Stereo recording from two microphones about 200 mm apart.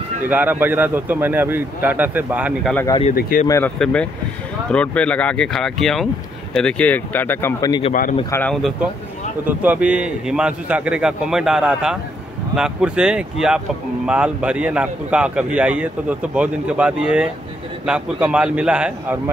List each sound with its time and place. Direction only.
0.2 s a man's voice: 10° right (ahead or behind)
2.7 s speech: 10° left (ahead or behind)
3.2 s speech: 50° left (ahead or behind)
3.4 s a man's voice: 15° left (ahead or behind)
7.9 s speech: 45° left (ahead or behind)
8.3 s speech: 10° left (ahead or behind)
9.4 s a man's voice: 10° right (ahead or behind)